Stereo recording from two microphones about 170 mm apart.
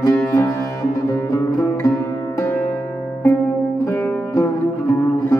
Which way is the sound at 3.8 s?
15° left (ahead or behind).